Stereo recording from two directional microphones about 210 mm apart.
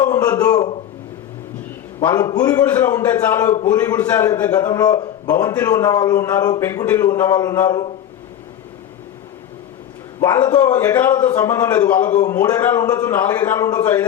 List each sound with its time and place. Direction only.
0.0 s a man's voice: 20° left (ahead or behind)
2.0 s a man's voice: 15° left (ahead or behind)
10.2 s a man's voice: 15° left (ahead or behind)